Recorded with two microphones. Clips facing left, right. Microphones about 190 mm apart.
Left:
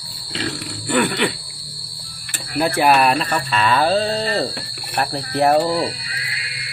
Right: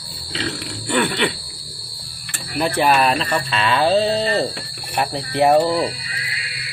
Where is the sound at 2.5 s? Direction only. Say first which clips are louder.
Left 1 dB; 5° left (ahead or behind).